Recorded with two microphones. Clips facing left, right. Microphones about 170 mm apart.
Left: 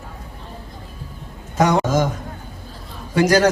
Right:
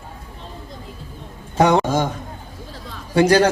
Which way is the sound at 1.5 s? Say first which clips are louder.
Right 1 dB; 30° right (ahead or behind).